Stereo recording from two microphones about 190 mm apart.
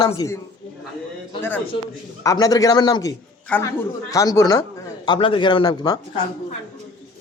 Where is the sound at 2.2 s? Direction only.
20° left (ahead or behind).